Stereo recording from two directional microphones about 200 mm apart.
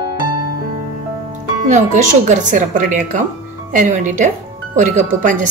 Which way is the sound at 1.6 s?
35° right (ahead or behind).